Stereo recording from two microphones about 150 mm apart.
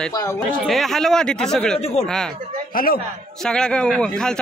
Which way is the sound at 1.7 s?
45° left (ahead or behind).